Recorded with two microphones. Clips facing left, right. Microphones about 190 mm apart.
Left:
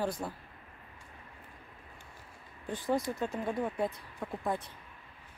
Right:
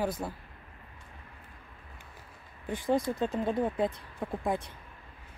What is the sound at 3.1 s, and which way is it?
Speech, 30° right (ahead or behind).